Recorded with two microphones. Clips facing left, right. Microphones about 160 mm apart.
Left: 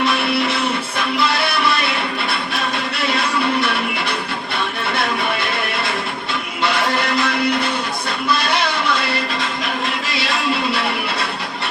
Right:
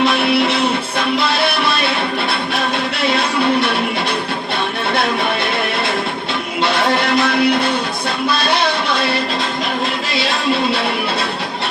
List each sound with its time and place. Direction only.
0.0 s music: 65° right (ahead or behind)
6.6 s music: 65° right (ahead or behind)